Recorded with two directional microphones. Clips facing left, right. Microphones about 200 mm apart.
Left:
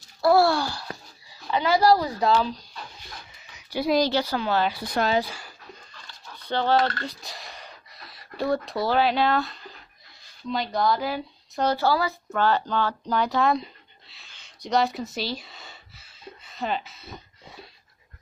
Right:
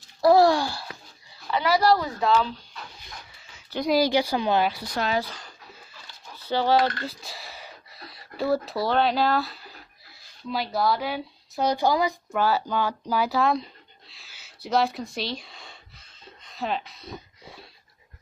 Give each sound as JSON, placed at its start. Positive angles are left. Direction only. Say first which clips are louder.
{"t": 0.2, "sound": "babbling", "louder": "right 2 dB", "side_deg": -20}
{"t": 1.5, "sound": "dog", "louder": "left 1 dB", "side_deg": 20}
{"t": 1.9, "sound": "speech", "louder": "left 1 dB", "side_deg": 35}
{"t": 3.3, "sound": "a sound", "louder": "left 2 dB", "side_deg": 15}
{"t": 4.0, "sound": "a woman's voice", "louder": "right 2 dB", "side_deg": -15}
{"t": 5.2, "sound": "speech", "louder": "left 2 dB", "side_deg": 10}
{"t": 5.9, "sound": "dog", "louder": "even", "side_deg": -10}
{"t": 7.1, "sound": "a sound", "louder": "even", "side_deg": 0}
{"t": 8.6, "sound": "speech", "louder": "left 1 dB", "side_deg": 0}
{"t": 11.6, "sound": "speech", "louder": "even", "side_deg": -15}
{"t": 15.1, "sound": "a sound", "louder": "left 1 dB", "side_deg": 0}